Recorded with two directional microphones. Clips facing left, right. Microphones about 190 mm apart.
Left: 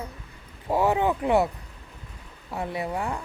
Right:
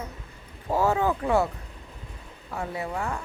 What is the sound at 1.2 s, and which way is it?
Speech, 20° left (ahead or behind).